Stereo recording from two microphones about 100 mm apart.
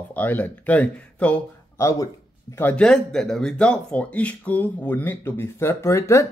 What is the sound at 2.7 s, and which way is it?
A man's voice, 5° left (ahead or behind).